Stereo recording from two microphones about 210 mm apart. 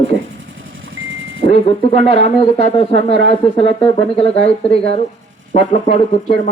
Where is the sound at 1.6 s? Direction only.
30° left (ahead or behind).